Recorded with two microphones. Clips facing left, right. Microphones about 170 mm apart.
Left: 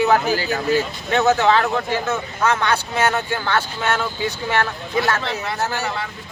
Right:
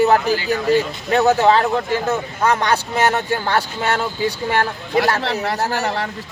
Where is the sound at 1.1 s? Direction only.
35° right (ahead or behind).